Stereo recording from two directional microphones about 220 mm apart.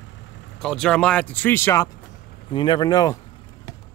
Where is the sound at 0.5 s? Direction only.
5° left (ahead or behind).